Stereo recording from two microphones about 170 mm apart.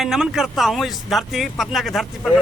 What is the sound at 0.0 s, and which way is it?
A man's voice, centre (ahead or behind).